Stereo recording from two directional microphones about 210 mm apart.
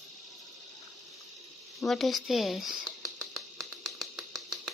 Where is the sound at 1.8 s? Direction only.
Centre (ahead or behind).